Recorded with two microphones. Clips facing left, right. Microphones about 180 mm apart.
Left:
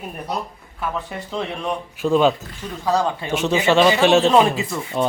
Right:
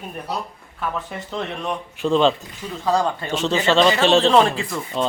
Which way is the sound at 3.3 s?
15° left (ahead or behind).